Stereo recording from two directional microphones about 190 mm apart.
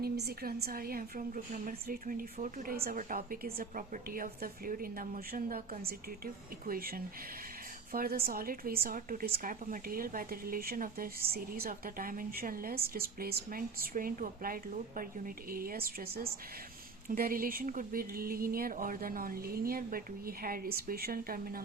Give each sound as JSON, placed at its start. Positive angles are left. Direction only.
{"t": 0.0, "sound": "a woman's voice", "side_deg": -55}